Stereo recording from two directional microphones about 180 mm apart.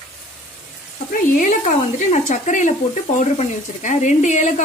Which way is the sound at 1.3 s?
40° left (ahead or behind).